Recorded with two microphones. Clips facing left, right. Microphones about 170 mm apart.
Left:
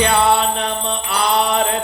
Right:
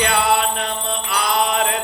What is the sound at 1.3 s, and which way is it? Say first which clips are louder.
Mantra: left 2 dB; 35° left (ahead or behind).